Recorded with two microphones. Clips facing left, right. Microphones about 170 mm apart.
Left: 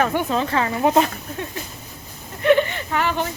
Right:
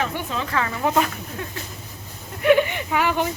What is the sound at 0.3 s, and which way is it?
Speech, 30° left (ahead or behind).